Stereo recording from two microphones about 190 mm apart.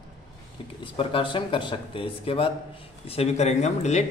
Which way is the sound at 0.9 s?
25° left (ahead or behind).